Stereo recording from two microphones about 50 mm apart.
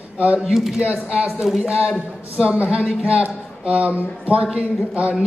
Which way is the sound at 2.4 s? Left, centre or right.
Right.